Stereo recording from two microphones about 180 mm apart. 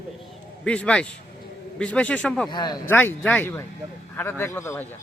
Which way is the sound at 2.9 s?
10° left (ahead or behind).